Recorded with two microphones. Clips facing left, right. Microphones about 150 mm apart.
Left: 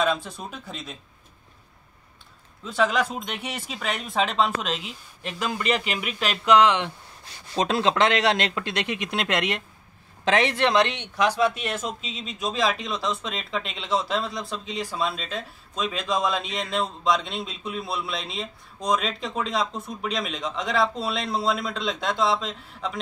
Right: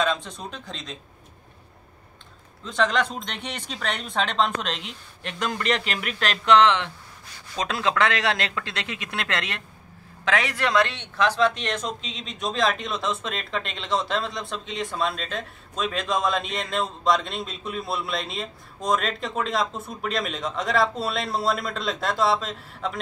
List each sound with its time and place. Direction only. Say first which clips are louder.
0.0 s speech: left 1 dB; 5° left (ahead or behind)
2.6 s speech: even; 5° left (ahead or behind)
7.5 s speech: left 3 dB; 25° left (ahead or behind); by 22.9 s centre (ahead or behind)